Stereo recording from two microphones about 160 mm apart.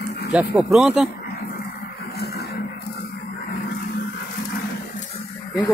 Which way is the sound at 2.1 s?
80° left.